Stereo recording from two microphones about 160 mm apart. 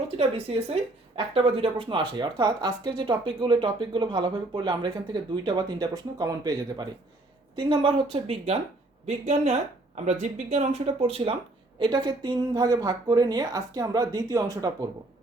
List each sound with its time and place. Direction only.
0.2 s a woman's voice: 40° right (ahead or behind)
11.8 s a woman's voice: 30° right (ahead or behind)